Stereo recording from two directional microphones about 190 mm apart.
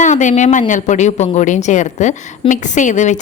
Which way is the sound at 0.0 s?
40° left (ahead or behind).